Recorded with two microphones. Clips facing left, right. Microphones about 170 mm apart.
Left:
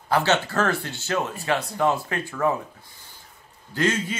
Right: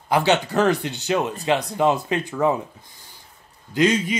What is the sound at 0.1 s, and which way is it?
Speech, 15° right (ahead or behind).